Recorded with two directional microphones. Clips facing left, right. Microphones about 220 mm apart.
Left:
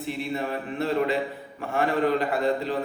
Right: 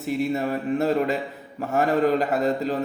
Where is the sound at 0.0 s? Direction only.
45° right (ahead or behind).